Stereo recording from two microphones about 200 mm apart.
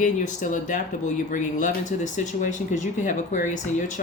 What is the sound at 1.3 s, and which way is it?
Speech, 40° left (ahead or behind).